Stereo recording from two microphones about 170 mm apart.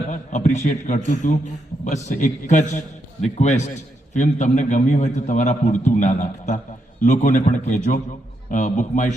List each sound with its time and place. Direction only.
0.1 s a man's voice: 45° left (ahead or behind)